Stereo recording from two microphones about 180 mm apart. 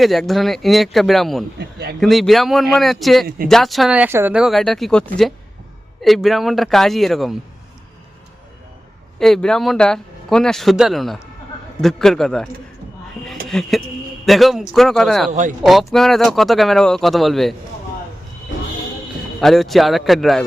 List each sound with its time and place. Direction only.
0.0 s speech: centre (ahead or behind)
1.5 s speech: 65° right (ahead or behind)
2.0 s speech: centre (ahead or behind)
3.2 s speech: 55° right (ahead or behind)
3.5 s speech: centre (ahead or behind)
9.1 s speech: centre (ahead or behind)
13.5 s speech: centre (ahead or behind)
15.3 s speech: 45° right (ahead or behind)
15.6 s speech: centre (ahead or behind)
19.4 s speech: centre (ahead or behind)